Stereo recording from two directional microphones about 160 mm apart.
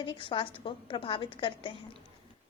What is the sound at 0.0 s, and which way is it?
A woman's voice, 30° left (ahead or behind).